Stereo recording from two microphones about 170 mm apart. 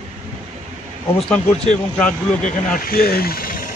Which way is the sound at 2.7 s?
60° left (ahead or behind).